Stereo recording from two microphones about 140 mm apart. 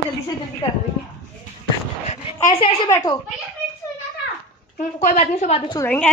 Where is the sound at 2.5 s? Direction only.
40° left (ahead or behind).